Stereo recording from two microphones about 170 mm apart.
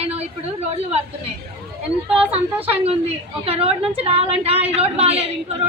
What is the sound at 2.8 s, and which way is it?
Speech, 35° right (ahead or behind).